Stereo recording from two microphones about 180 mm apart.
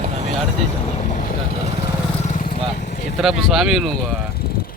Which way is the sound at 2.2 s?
45° left (ahead or behind).